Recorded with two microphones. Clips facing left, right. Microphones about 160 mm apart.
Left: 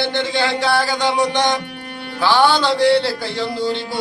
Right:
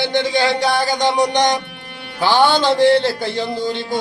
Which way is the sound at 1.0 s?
45° right (ahead or behind).